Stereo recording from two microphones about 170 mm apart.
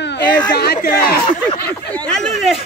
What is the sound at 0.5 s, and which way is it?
Speech, 70° left (ahead or behind).